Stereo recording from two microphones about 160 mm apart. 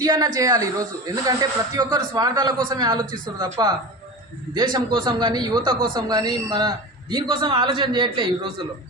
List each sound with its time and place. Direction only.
0.0 s speech: 25° right (ahead or behind)
4.5 s speech: 25° right (ahead or behind)